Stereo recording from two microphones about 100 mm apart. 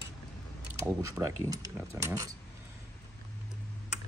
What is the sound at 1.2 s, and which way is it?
Speech, 35° right (ahead or behind).